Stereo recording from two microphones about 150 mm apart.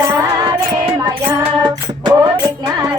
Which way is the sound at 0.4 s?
30° right (ahead or behind).